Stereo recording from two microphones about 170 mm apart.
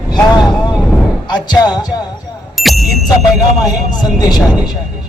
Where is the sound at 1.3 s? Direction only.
25° left (ahead or behind).